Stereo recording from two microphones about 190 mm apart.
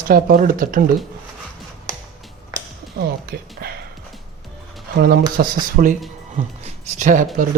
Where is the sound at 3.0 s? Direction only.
55° right (ahead or behind).